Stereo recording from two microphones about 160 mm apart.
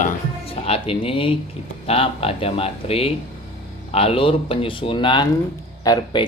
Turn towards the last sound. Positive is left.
turn(degrees=25)  # may be behind; listen again after turning